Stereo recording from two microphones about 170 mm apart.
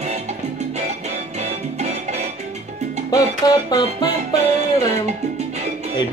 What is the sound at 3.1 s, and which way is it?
Speech, 20° left (ahead or behind).